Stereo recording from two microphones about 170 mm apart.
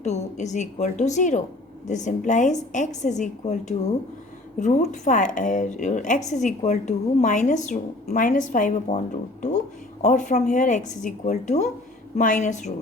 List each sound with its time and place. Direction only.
0.0 s a woman's voice: 40° left (ahead or behind)